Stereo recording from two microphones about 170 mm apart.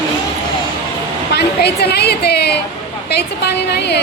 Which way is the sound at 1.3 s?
75° left (ahead or behind).